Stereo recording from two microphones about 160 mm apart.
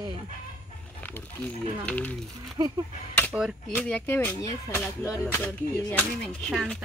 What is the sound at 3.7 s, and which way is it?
Speech, 10° left (ahead or behind).